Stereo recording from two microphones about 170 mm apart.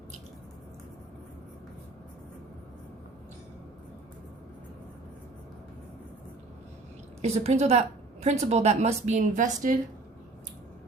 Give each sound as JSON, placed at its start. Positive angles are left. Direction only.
{"t": 7.2, "sound": "a woman's voice", "side_deg": -40}